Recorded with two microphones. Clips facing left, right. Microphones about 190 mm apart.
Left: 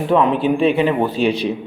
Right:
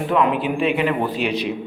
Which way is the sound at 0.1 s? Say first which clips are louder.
Left 5 dB; 25° left (ahead or behind).